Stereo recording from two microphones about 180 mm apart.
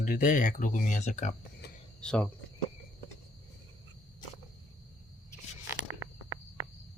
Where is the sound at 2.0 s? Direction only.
5° left (ahead or behind).